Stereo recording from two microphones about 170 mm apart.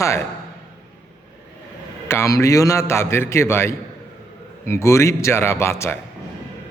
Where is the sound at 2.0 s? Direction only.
15° left (ahead or behind).